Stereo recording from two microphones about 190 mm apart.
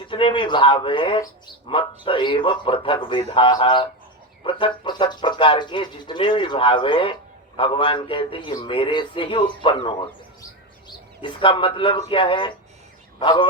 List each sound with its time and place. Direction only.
0.1 s a man's voice: 25° left (ahead or behind)